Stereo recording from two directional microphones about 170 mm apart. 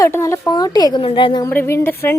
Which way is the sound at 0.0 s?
15° left (ahead or behind).